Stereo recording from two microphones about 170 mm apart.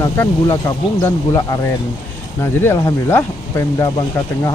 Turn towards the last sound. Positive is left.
turn(degrees=15)  # may be behind; listen again after turning